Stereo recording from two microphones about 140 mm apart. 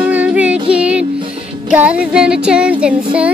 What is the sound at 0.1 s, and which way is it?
Music, 10° right (ahead or behind).